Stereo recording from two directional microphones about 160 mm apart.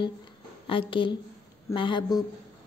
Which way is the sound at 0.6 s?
35° left (ahead or behind).